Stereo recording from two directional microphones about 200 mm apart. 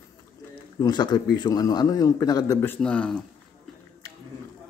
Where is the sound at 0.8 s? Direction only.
20° left (ahead or behind); by 3.2 s 5° left (ahead or behind).